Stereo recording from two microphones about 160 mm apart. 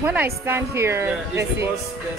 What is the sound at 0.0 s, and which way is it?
A woman's voice, 10° right (ahead or behind).